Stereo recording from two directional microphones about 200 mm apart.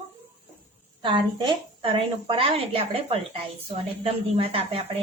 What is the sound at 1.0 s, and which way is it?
A woman's voice, 25° right (ahead or behind).